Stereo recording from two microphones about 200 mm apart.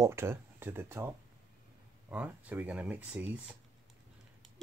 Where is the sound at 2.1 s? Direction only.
5° right (ahead or behind).